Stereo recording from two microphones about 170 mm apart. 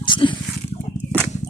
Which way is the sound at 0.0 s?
30° left (ahead or behind).